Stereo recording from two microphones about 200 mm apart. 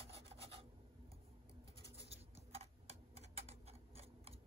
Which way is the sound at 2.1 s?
30° right (ahead or behind).